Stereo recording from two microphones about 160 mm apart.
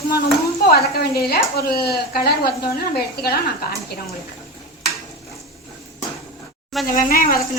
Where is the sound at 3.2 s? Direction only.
80° left.